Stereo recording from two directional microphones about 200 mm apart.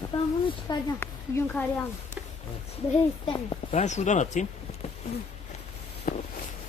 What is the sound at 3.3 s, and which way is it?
Speech, 25° left (ahead or behind).